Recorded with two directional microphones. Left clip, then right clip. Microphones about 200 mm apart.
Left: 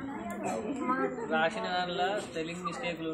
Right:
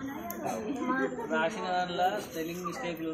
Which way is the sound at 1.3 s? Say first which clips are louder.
Even; 20° left (ahead or behind).